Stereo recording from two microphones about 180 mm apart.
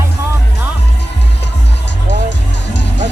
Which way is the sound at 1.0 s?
75° left (ahead or behind).